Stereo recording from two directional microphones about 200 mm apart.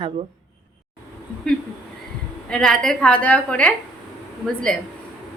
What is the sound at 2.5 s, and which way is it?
A woman's voice, 5° left (ahead or behind).